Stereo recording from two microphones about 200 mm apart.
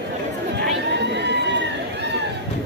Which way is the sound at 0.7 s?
60° right (ahead or behind).